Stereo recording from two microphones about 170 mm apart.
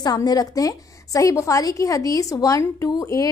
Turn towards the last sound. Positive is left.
turn(degrees=20)  # may be behind; listen again after turning